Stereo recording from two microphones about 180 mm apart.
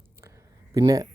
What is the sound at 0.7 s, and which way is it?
Speech, 20° right (ahead or behind).